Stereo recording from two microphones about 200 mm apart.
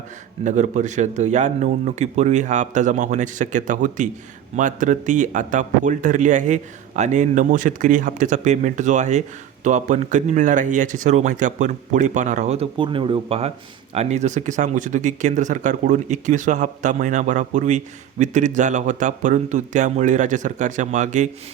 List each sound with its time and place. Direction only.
0.4 s speech: 35° right (ahead or behind)